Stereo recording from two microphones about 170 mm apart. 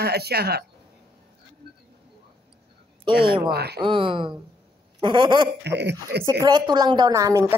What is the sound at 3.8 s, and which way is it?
A woman's voice, 30° right (ahead or behind).